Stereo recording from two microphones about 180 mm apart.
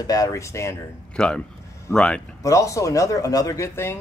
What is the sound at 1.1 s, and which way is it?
A man's voice, 5° left (ahead or behind).